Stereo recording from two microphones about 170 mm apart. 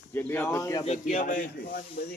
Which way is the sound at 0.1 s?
10° left (ahead or behind).